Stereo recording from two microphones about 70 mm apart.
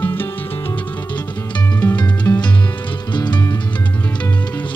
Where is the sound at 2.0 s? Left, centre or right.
Left.